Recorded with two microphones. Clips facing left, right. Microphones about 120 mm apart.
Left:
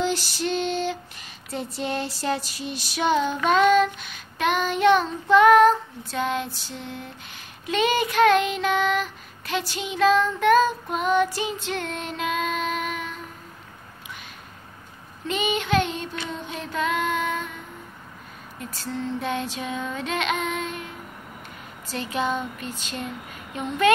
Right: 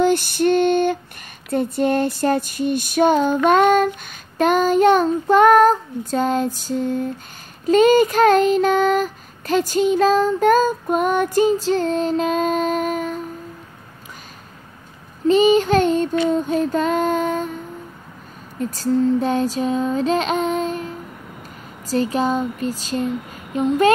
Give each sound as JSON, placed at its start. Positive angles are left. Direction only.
{"t": 0.0, "sound": "female singing", "side_deg": -55}
{"t": 7.6, "sound": "child singing", "side_deg": -45}
{"t": 15.2, "sound": "child singing", "side_deg": -35}
{"t": 18.6, "sound": "child singing", "side_deg": -40}